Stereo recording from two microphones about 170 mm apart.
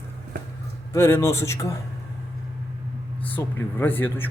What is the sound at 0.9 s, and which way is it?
Speech, 15° left (ahead or behind).